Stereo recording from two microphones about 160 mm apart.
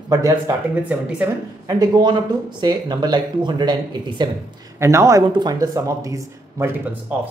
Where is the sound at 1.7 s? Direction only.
25° right (ahead or behind).